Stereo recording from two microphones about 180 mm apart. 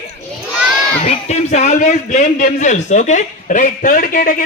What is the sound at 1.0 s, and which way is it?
A man's voice, 35° left (ahead or behind).